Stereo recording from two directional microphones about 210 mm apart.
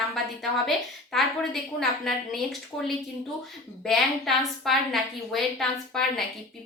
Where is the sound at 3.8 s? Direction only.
Centre (ahead or behind).